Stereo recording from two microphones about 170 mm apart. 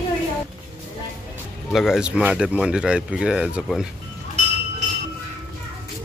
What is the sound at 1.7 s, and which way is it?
Speech, centre (ahead or behind).